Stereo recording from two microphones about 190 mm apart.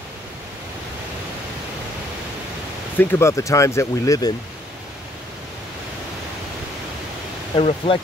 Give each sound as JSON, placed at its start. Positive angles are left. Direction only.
{"t": 3.0, "sound": "speech", "side_deg": 10}
{"t": 7.5, "sound": "speech", "side_deg": 30}